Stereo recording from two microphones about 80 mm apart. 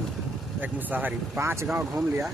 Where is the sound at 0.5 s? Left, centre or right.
Right.